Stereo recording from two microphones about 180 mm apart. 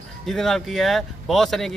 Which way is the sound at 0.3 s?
Centre (ahead or behind).